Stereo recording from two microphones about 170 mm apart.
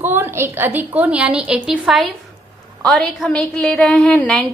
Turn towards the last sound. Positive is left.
turn(degrees=5)  # may be behind; listen again after turning